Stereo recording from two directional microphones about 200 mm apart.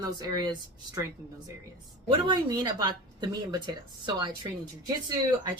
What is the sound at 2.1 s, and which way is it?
Speech, 25° right (ahead or behind).